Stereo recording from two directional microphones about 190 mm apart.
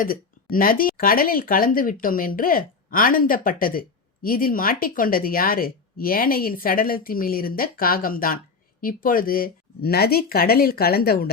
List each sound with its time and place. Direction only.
0.0 s speech: 50° left (ahead or behind)